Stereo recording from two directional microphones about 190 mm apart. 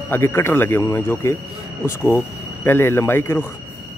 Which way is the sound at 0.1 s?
15° left (ahead or behind).